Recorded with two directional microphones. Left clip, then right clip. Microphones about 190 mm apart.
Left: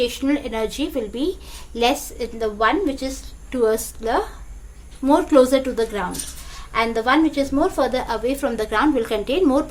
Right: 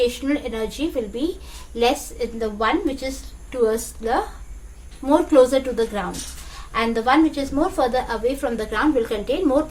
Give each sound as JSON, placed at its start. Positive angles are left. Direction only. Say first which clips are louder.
{"t": 0.0, "sound": "a woman's voice", "louder": "even", "side_deg": 40}